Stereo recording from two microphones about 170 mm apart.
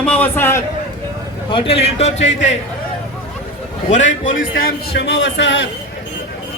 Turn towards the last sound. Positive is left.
turn(degrees=90)